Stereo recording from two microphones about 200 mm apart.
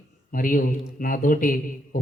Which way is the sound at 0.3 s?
45° left (ahead or behind).